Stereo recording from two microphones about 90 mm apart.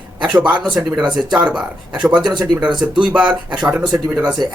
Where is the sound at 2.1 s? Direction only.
55° right (ahead or behind).